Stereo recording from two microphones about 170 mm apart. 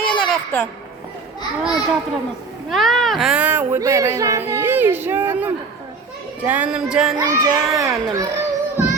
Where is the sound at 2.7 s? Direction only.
Centre (ahead or behind).